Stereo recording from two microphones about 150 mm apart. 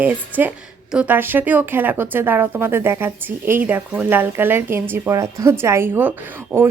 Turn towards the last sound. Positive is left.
turn(degrees=-10)  # may be behind; listen again after turning